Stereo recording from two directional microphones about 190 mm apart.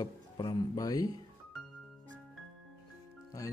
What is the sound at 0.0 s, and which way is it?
Speech, 20° left (ahead or behind).